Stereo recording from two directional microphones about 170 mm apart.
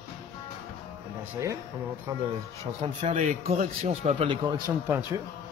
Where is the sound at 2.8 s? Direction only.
40° right (ahead or behind).